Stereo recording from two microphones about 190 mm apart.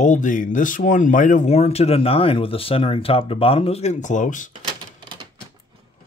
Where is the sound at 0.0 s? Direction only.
40° left (ahead or behind).